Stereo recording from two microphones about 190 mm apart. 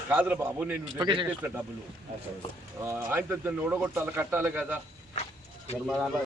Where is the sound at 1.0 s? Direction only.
25° right (ahead or behind).